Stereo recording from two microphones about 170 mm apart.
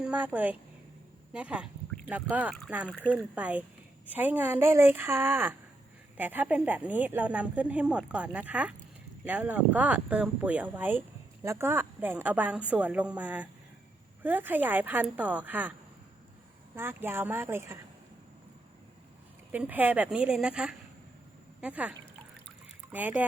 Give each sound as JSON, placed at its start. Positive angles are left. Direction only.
{"t": 0.0, "sound": "a woman's voice", "side_deg": -10}
{"t": 1.3, "sound": "a sound", "side_deg": -5}
{"t": 2.3, "sound": "speech", "side_deg": -10}
{"t": 16.7, "sound": "speech", "side_deg": -15}
{"t": 19.5, "sound": "speech", "side_deg": -10}